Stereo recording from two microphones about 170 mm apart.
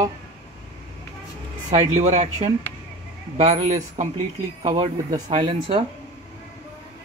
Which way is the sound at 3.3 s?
40° right (ahead or behind).